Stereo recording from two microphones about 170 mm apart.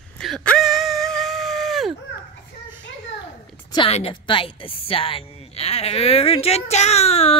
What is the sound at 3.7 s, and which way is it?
A woman's voice, 30° left (ahead or behind).